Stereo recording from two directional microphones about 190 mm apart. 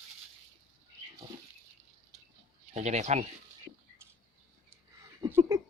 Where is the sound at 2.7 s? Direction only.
35° right (ahead or behind).